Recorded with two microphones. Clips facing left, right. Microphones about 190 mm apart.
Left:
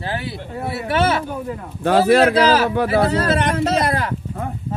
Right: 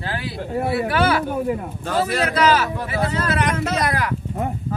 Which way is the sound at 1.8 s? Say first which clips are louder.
Left 8 dB; 60° left (ahead or behind).